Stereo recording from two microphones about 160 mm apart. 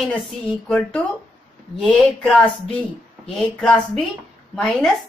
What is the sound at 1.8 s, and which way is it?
A woman's voice, 5° left (ahead or behind).